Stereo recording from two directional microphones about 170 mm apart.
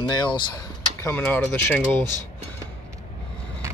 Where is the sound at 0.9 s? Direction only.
15° left (ahead or behind).